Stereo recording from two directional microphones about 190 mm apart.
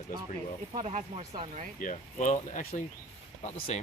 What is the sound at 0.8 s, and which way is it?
Speech, 35° right (ahead or behind).